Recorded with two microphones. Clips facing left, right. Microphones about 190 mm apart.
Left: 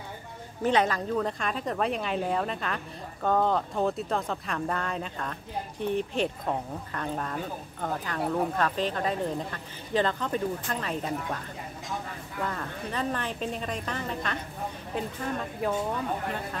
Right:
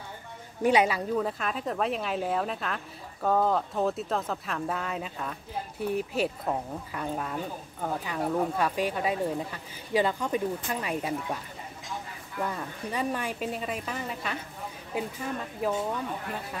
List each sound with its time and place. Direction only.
0.6 s a woman's voice: 10° right (ahead or behind)